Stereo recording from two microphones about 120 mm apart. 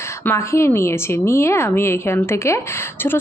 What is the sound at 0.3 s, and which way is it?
A woman's voice, 25° left (ahead or behind).